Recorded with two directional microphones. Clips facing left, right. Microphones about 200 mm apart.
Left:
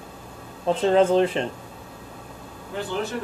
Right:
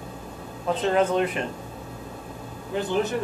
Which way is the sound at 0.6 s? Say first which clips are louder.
Left 4 dB; 30° left (ahead or behind).